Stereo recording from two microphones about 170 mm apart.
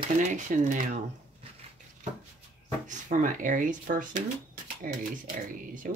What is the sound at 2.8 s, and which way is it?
Speech, 50° right (ahead or behind).